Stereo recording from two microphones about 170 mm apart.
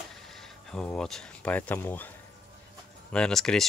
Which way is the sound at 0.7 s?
5° left (ahead or behind).